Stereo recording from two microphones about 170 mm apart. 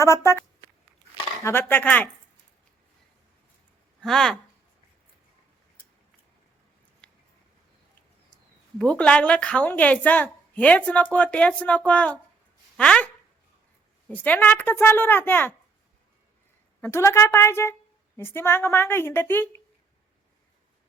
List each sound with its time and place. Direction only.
0.0 s a woman's voice: 15° left (ahead or behind)
1.5 s a woman's voice: 10° left (ahead or behind)
4.0 s speech: centre (ahead or behind)
7.0 s a sound: 5° left (ahead or behind)
8.8 s a woman's voice: 5° left (ahead or behind)
14.1 s a woman's voice: 10° left (ahead or behind)
16.8 s a woman's voice: 15° left (ahead or behind)